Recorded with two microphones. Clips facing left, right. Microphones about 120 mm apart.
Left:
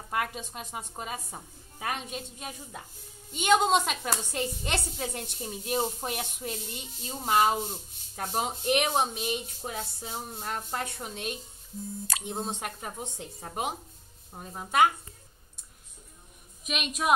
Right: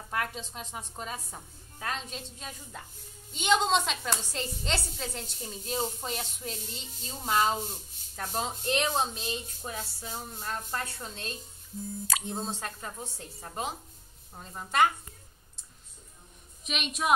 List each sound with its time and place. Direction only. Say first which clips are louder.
0.1 s a woman's voice: left 2 dB; 10° left (ahead or behind)
16.6 s a woman's voice: left 1 dB; 5° left (ahead or behind)